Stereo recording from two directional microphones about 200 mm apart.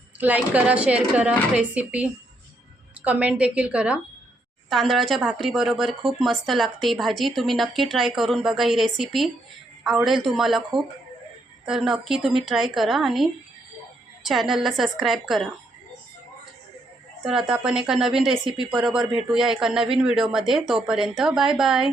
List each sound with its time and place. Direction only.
0.2 s a woman's voice: 10° right (ahead or behind)
14.3 s speech: centre (ahead or behind)
17.2 s speech: 5° right (ahead or behind)